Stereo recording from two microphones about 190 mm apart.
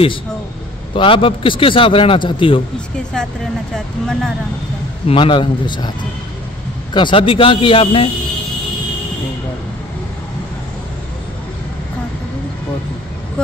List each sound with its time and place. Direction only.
0.9 s a man's voice: 25° left (ahead or behind)
3.1 s speech: 5° left (ahead or behind)
5.0 s a man's voice: 25° left (ahead or behind)
6.9 s a man's voice: 25° left (ahead or behind)